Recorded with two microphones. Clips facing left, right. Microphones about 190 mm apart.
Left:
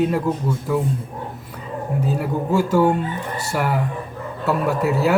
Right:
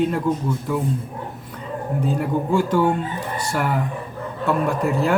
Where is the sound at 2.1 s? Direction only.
5° left (ahead or behind).